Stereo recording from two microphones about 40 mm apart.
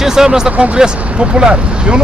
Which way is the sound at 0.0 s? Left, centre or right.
Centre.